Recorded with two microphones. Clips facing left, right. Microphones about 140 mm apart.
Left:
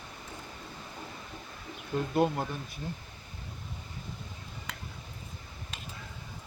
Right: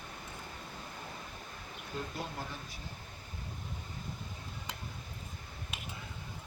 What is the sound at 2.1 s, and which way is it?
Speech, 65° left (ahead or behind).